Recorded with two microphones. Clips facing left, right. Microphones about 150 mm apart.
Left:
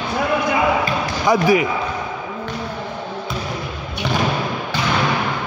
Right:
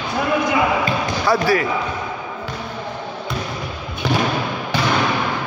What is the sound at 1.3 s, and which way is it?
Speech, 15° left (ahead or behind).